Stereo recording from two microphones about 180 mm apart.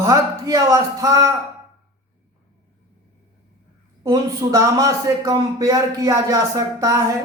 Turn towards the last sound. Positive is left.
turn(degrees=-15)  # may be behind; listen again after turning